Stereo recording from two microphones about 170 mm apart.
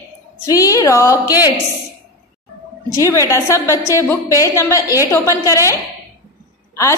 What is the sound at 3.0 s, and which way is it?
A woman's voice, 15° left (ahead or behind).